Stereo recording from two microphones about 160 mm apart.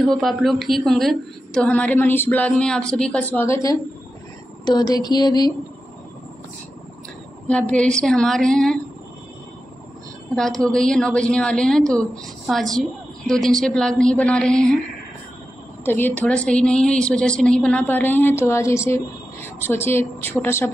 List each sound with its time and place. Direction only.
0.0 s a woman's voice: centre (ahead or behind); by 3.7 s 15° left (ahead or behind)
4.6 s a sound: 25° left (ahead or behind)
7.4 s a woman's voice: 5° left (ahead or behind)
10.3 s a woman's voice: 5° left (ahead or behind)
15.8 s a woman's voice: 10° left (ahead or behind)